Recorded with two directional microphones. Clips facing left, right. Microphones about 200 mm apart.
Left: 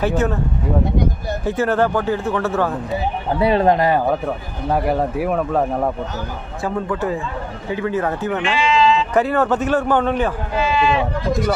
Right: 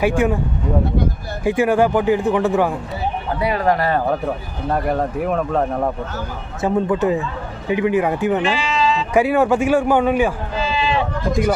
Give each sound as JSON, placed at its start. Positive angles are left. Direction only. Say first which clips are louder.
{"t": 0.0, "sound": "speech", "louder": "right 2 dB", "side_deg": -10}
{"t": 1.4, "sound": "speech", "louder": "right 3 dB", "side_deg": -10}
{"t": 3.3, "sound": "speech", "louder": "left 4 dB", "side_deg": 25}
{"t": 4.6, "sound": "speech", "louder": "left 1 dB", "side_deg": 5}
{"t": 6.6, "sound": "speech", "louder": "right 5 dB", "side_deg": -20}
{"t": 8.4, "sound": "sheep", "louder": "left 2 dB", "side_deg": -40}
{"t": 9.1, "sound": "speech", "louder": "right 2 dB", "side_deg": -10}
{"t": 10.6, "sound": "sheep", "louder": "left 2 dB", "side_deg": -30}